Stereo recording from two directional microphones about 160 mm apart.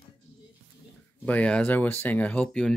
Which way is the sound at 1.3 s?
10° left (ahead or behind).